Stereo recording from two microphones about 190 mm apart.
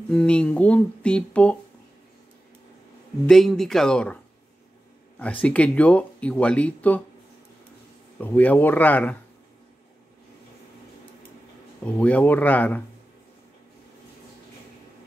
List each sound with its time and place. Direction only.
0.1 s speech: 5° left (ahead or behind)
3.3 s speech: centre (ahead or behind)
5.2 s speech: 5° left (ahead or behind)
8.2 s speech: 10° left (ahead or behind)
11.8 s speech: 5° left (ahead or behind)